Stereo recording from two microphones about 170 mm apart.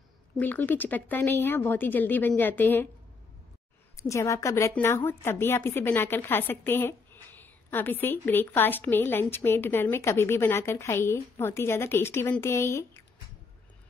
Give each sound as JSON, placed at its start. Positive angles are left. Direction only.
{"t": 0.4, "sound": "a woman's voice", "side_deg": 10}
{"t": 3.9, "sound": "a woman's voice", "side_deg": 20}